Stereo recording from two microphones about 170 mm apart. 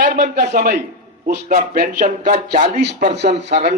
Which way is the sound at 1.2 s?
65° right (ahead or behind).